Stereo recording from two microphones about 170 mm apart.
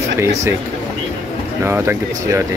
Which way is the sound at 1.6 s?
15° right (ahead or behind).